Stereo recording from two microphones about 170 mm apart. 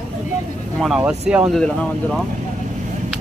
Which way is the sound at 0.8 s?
Centre (ahead or behind).